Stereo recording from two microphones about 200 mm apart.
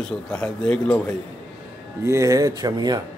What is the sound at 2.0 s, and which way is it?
Speech, 15° right (ahead or behind).